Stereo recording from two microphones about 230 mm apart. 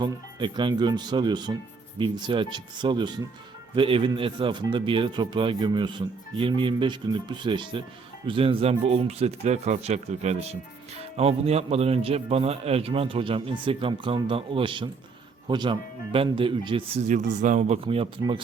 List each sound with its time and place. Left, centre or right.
0.0 s speech: centre